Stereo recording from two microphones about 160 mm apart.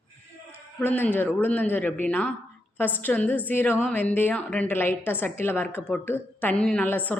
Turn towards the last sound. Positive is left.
turn(degrees=10)  # may be behind; listen again after turning